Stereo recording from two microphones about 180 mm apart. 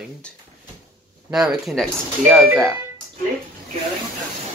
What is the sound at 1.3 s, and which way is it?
Speech, centre (ahead or behind).